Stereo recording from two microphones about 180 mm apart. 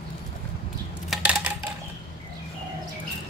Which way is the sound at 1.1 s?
5° right (ahead or behind).